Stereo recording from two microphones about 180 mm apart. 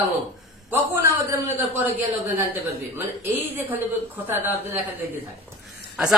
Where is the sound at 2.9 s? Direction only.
10° right (ahead or behind).